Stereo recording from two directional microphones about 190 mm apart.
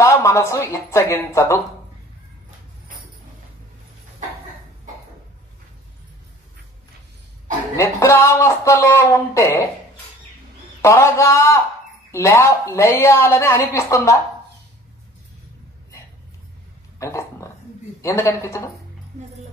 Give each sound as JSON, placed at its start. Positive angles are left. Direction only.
{"t": 0.0, "sound": "speech", "side_deg": 15}
{"t": 7.7, "sound": "speech", "side_deg": 15}
{"t": 10.8, "sound": "speech", "side_deg": 15}
{"t": 17.0, "sound": "a sound", "side_deg": 15}
{"t": 18.0, "sound": "speech", "side_deg": 15}